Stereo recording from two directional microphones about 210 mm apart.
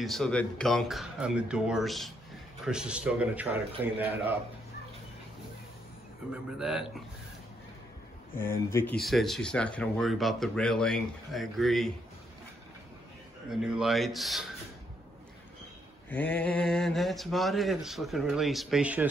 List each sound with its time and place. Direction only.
0.0 s a man's voice: centre (ahead or behind)
6.3 s speech: 5° right (ahead or behind)
8.5 s speech: 10° left (ahead or behind)
9.0 s speech: centre (ahead or behind)
13.5 s speech: centre (ahead or behind)
16.1 s speech: 5° left (ahead or behind)